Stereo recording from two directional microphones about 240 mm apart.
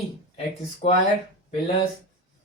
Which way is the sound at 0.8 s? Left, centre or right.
Left.